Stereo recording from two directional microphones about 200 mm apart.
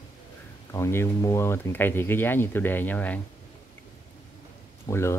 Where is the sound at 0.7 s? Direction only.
15° left (ahead or behind).